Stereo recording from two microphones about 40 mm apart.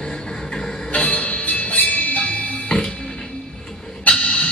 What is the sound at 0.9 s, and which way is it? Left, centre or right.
Music, left.